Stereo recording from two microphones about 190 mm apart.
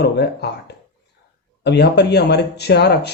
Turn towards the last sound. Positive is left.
turn(degrees=60)  # may be behind; listen again after turning